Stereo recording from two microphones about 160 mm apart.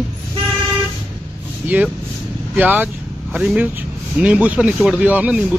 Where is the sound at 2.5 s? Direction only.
10° right (ahead or behind).